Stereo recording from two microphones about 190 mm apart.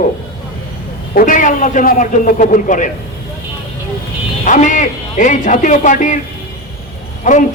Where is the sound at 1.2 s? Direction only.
45° left (ahead or behind).